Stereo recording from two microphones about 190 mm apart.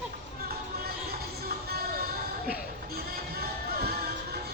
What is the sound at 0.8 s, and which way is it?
Music, 55° right (ahead or behind).